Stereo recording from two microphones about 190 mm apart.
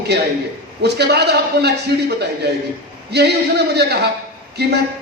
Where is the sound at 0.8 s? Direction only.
60° right (ahead or behind).